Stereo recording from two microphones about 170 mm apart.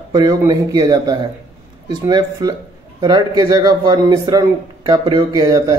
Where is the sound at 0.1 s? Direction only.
20° right (ahead or behind).